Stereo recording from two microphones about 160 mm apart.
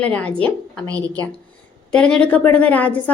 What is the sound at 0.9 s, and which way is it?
Speech, 20° right (ahead or behind).